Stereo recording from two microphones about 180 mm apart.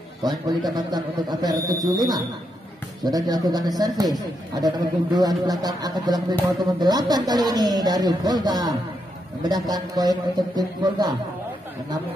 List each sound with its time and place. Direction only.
0.2 s speech: 20° right (ahead or behind)